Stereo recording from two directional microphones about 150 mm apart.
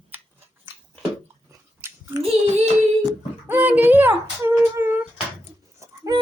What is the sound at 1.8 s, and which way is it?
Chewing, 15° right (ahead or behind).